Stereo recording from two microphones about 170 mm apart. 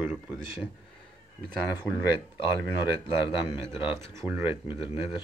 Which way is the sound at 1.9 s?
Centre (ahead or behind).